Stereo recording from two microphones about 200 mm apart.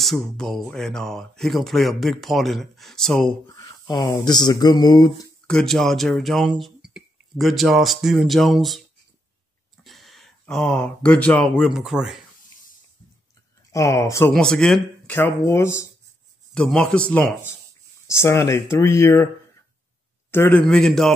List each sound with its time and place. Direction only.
0.0 s speech: centre (ahead or behind)
3.4 s speech: 15° left (ahead or behind)
5.5 s speech: 5° left (ahead or behind)
9.8 s a sound: centre (ahead or behind)
11.5 s speech: centre (ahead or behind)
13.7 s speech: 15° left (ahead or behind)
14.3 s speech: 5° left (ahead or behind)
16.5 s speech: 5° left (ahead or behind)
20.2 s speech: 10° left (ahead or behind)